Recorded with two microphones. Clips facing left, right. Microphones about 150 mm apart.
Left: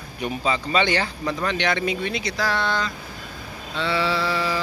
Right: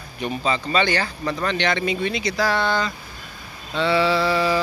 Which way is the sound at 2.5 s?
40° right (ahead or behind).